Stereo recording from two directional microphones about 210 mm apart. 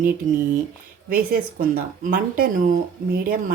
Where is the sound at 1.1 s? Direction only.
45° right (ahead or behind).